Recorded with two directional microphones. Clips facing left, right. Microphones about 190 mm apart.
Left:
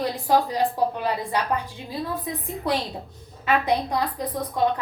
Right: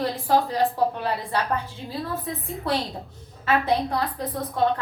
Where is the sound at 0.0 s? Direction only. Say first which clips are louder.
Even; 15° left (ahead or behind).